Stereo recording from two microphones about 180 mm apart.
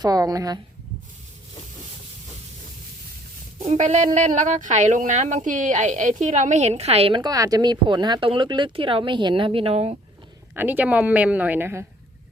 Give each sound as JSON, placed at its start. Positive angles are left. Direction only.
{"t": 0.0, "sound": "a woman's voice", "side_deg": -20}
{"t": 3.6, "sound": "speech", "side_deg": -35}
{"t": 10.5, "sound": "speech", "side_deg": -10}